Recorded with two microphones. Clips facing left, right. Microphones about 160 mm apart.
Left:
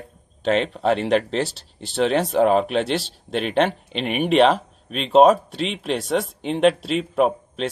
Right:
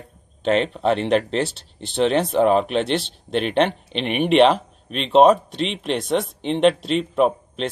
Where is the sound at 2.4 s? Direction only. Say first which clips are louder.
Even; 40° left (ahead or behind).